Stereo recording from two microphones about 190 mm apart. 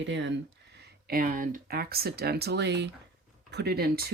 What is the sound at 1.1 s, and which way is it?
Speech, 45° right (ahead or behind).